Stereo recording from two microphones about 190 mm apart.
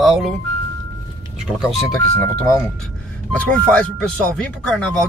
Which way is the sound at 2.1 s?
15° left (ahead or behind).